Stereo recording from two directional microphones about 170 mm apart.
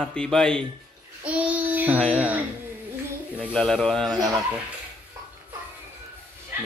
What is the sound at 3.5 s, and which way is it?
Speech, 5° left (ahead or behind).